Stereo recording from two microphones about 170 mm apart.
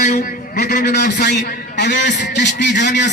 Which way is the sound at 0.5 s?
65° left (ahead or behind).